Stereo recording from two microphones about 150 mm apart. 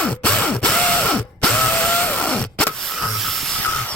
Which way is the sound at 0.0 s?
10° left (ahead or behind).